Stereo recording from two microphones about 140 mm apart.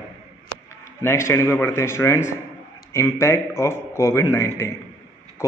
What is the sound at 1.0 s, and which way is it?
A man's voice, 20° left (ahead or behind).